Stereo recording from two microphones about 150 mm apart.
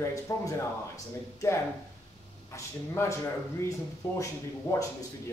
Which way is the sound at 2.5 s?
20° left (ahead or behind).